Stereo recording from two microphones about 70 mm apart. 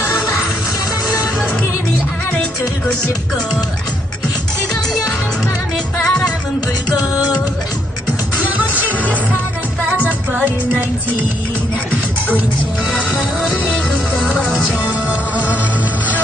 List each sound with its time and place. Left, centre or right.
6.0 s music: centre
7.2 s music: left
8.5 s music: right
10.0 s music: right
13.4 s music: centre
15.0 s music: right